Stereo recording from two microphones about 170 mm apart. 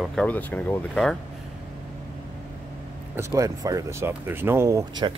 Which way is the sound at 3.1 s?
20° right (ahead or behind).